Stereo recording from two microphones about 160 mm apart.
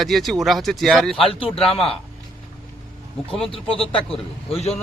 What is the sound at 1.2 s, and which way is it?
Speech, 35° left (ahead or behind).